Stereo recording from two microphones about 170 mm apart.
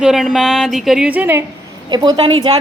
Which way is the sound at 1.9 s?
25° right (ahead or behind).